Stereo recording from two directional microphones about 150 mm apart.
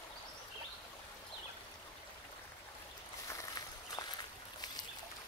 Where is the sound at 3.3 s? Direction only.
25° left (ahead or behind).